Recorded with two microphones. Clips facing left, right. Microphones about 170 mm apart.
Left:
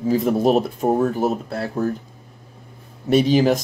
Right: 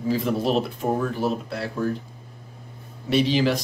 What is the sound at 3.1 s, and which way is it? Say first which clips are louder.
Speech: left 5 dB; 45° left (ahead or behind).